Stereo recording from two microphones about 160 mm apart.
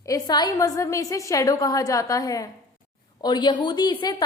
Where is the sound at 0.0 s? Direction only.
20° left (ahead or behind).